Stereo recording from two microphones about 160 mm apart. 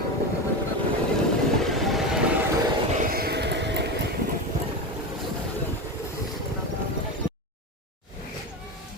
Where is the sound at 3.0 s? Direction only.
70° right (ahead or behind); by 4.0 s 90° right.